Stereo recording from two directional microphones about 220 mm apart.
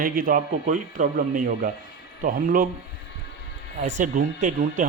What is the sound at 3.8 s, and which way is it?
A man's voice, 35° right (ahead or behind).